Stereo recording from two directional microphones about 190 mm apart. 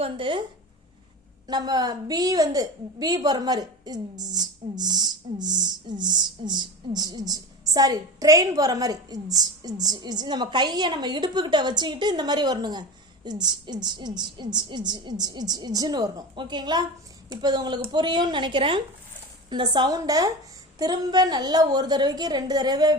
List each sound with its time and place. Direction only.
0.0 s a woman's voice: 25° right (ahead or behind)
1.5 s a woman's voice: 20° right (ahead or behind)